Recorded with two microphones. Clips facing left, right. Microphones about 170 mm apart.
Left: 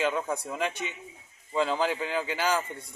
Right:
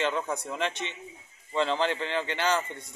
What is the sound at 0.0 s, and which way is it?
A man's voice, 10° left (ahead or behind).